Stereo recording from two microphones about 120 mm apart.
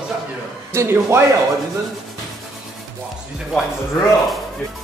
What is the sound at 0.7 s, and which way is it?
Speech, 20° right (ahead or behind).